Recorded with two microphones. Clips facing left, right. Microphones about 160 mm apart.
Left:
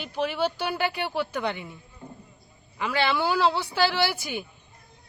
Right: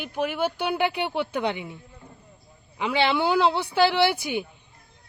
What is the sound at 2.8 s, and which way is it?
Speech, 20° right (ahead or behind).